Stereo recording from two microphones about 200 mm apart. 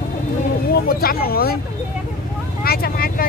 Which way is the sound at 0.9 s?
50° left (ahead or behind).